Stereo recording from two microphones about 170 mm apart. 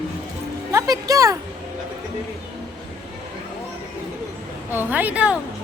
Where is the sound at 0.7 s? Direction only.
20° right (ahead or behind).